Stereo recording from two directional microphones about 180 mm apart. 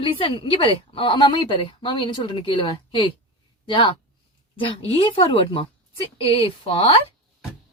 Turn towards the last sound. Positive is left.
turn(degrees=30)  # may be behind; listen again after turning